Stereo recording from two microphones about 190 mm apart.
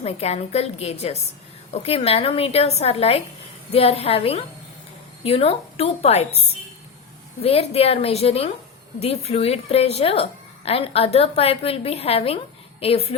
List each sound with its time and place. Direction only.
0.0 s a woman's voice: 35° left (ahead or behind)
7.4 s a woman's voice: 30° left (ahead or behind)